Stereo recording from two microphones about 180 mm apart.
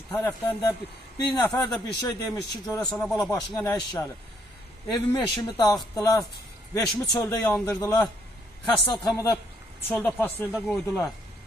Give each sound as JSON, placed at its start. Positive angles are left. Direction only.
{"t": 0.1, "sound": "speech", "side_deg": 15}
{"t": 2.8, "sound": "speech", "side_deg": 0}
{"t": 3.2, "sound": "speech", "side_deg": 20}
{"t": 9.1, "sound": "a man's voice", "side_deg": 15}